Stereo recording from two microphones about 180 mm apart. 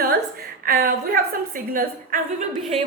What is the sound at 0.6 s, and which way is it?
A woman's voice, 55° right (ahead or behind).